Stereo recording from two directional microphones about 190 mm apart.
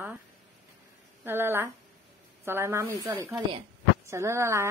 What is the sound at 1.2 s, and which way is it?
Speech, 10° right (ahead or behind).